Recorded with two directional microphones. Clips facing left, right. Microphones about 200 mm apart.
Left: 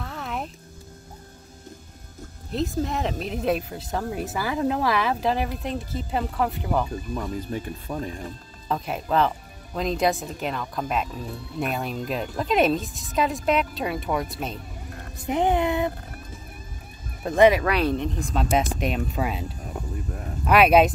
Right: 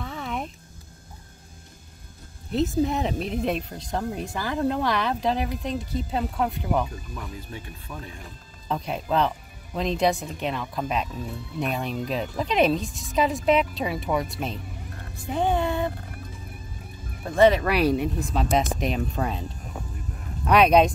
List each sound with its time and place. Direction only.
0.0 s music: centre (ahead or behind)
2.5 s speech: centre (ahead or behind)
7.2 s speech: 40° left (ahead or behind)
8.6 s speech: centre (ahead or behind)
15.2 s speech: 20° left (ahead or behind)
17.4 s speech: 10° left (ahead or behind)
17.6 s speech: 10° right (ahead or behind)
20.4 s speech: 5° left (ahead or behind)